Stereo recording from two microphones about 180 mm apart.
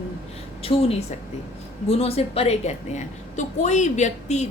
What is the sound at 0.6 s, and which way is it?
A woman's voice, 35° left (ahead or behind).